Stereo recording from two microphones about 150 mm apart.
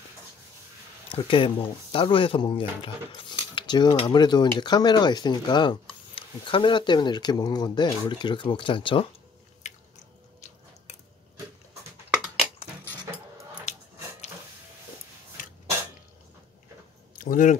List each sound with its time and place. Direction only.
1.1 s speech: 35° left (ahead or behind)
9.6 s biting: 50° left (ahead or behind)
17.2 s speech: 65° left (ahead or behind)